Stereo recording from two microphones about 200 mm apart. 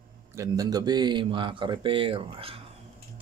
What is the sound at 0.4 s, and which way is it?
Speech, 20° right (ahead or behind).